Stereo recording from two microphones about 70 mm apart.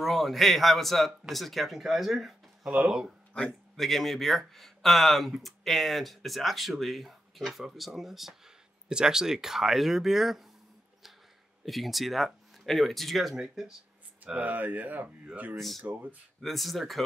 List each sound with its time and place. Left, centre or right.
0.0 s speech: centre
3.7 s speech: centre
11.6 s speech: centre
14.2 s speech: right
15.5 s speech: centre
15.8 s speech: right
16.3 s speech: centre